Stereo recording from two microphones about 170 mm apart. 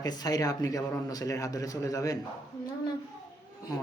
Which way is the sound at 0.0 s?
25° left (ahead or behind).